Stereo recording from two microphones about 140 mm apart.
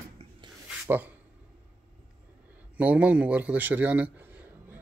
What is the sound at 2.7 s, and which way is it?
A man's voice, 10° right (ahead or behind).